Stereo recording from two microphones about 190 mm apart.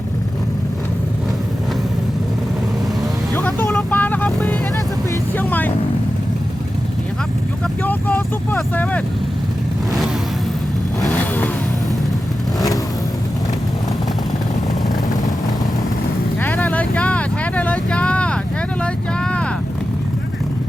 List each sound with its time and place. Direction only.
3.3 s vehicle: 10° left (ahead or behind)
7.9 s vehicle: 10° left (ahead or behind)
12.5 s vehicle: 20° left (ahead or behind)
16.4 s vehicle: 10° left (ahead or behind)